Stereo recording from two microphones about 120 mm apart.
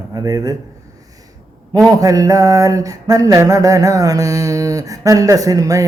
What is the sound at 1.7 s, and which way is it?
Mantra, 30° right (ahead or behind).